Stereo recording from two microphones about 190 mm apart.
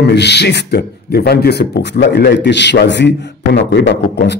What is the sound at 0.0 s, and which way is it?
A man's voice, 60° left (ahead or behind).